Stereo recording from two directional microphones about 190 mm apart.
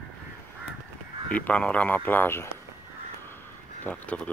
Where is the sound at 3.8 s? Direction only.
5° left (ahead or behind).